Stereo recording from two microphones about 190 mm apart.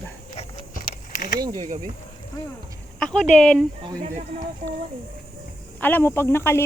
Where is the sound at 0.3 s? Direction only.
40° left (ahead or behind).